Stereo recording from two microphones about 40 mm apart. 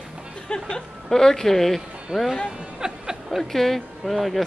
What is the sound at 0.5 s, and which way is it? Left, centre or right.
A woman's voice, left.